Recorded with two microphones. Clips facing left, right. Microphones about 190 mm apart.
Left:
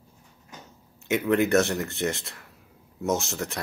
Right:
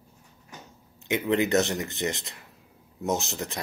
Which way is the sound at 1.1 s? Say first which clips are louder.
Left 2 dB; 20° right (ahead or behind).